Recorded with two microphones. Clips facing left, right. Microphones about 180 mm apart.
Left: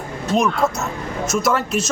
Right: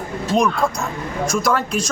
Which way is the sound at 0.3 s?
5° left (ahead or behind).